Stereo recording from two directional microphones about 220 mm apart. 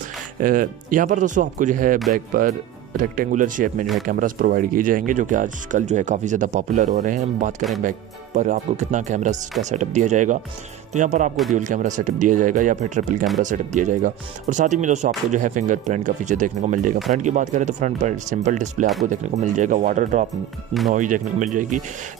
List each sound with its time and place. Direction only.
0.4 s speech: 40° right (ahead or behind)